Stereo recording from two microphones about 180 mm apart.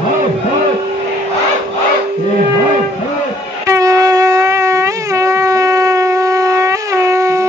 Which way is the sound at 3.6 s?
20° right (ahead or behind).